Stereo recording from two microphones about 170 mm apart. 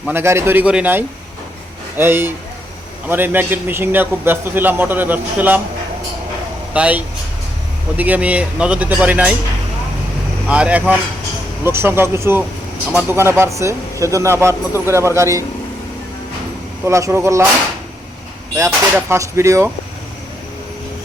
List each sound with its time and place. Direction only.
0.1 s a man's voice: 15° right (ahead or behind)
6.7 s a man's voice: 10° right (ahead or behind)
10.4 s a man's voice: 10° right (ahead or behind)
16.8 s a man's voice: 15° right (ahead or behind)
18.5 s a man's voice: 15° right (ahead or behind)